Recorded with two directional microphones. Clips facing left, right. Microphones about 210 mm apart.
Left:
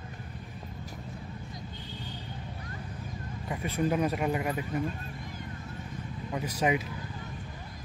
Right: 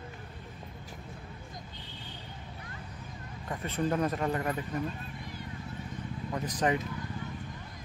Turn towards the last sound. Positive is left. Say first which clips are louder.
# left 1 dB
turn(degrees=10)  # may be behind; listen again after turning